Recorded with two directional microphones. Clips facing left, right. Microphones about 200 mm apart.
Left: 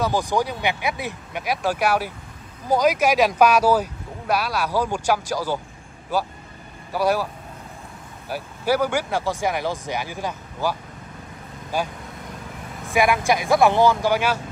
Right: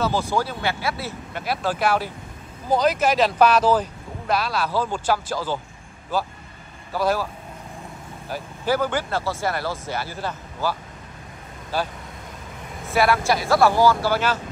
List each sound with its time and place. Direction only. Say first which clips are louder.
0.0 s speech: left 1 dB; 15° left (ahead or behind)
6.9 s speech: left 1 dB; 10° left (ahead or behind)
8.3 s speech: left 1 dB; 10° left (ahead or behind)
12.9 s speech: even; 15° left (ahead or behind)